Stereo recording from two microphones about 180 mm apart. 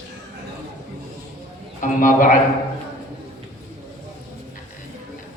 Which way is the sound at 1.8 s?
50° left (ahead or behind).